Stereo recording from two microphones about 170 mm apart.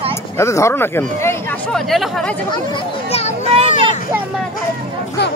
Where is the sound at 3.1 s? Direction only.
40° left (ahead or behind).